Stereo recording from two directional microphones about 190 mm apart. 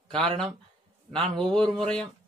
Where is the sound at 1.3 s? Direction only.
5° left (ahead or behind).